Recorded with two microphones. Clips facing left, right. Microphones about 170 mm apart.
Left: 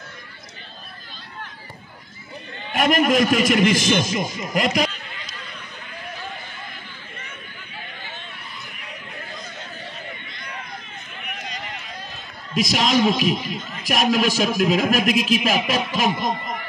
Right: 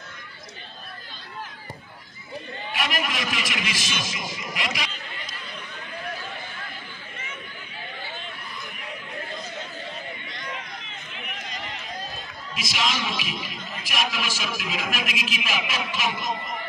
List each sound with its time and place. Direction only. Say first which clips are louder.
2.7 s a man's voice: left 11 dB; 50° left (ahead or behind)
12.5 s a man's voice: left 10 dB; 45° left (ahead or behind)